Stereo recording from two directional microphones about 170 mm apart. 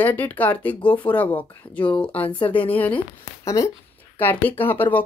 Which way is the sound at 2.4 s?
30° left (ahead or behind).